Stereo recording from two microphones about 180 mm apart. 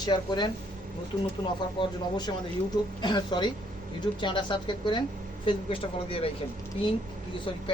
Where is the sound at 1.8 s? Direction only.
25° left (ahead or behind).